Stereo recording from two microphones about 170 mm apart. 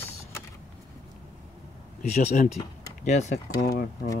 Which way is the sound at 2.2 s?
45° left (ahead or behind).